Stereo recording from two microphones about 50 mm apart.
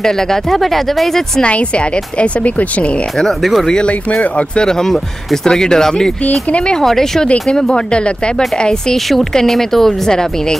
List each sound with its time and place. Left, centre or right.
0.0 s speech: centre
2.1 s speech: left
3.2 s speech: centre
3.6 s speech: centre
4.2 s speech: left
4.6 s speech: centre